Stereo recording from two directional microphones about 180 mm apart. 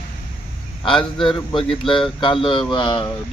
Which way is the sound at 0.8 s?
25° left (ahead or behind).